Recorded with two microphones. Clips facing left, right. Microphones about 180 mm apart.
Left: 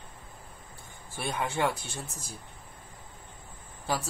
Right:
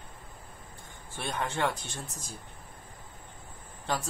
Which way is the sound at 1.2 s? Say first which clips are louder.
Left 1 dB; 10° left (ahead or behind).